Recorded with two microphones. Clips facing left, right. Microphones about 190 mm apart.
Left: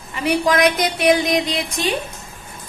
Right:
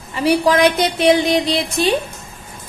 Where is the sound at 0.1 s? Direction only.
35° right (ahead or behind).